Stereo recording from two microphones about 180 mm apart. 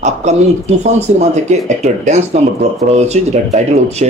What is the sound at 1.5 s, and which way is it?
Speech, 40° right (ahead or behind).